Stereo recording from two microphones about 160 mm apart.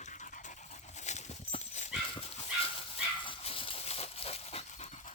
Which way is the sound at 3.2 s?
35° left (ahead or behind).